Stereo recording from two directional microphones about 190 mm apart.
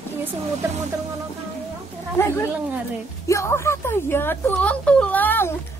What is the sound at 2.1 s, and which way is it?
Speech, 15° left (ahead or behind).